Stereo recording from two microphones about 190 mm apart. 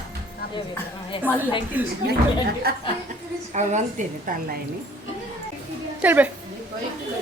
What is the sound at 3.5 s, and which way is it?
A woman's voice, 40° right (ahead or behind).